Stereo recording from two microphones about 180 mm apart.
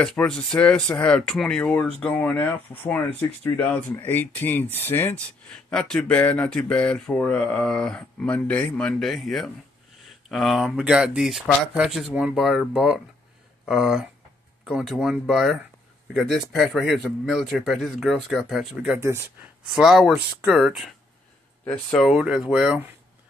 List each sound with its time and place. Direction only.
0.0 s a man's voice: 5° left (ahead or behind); by 19.2 s 15° right (ahead or behind)
19.7 s a man's voice: centre (ahead or behind)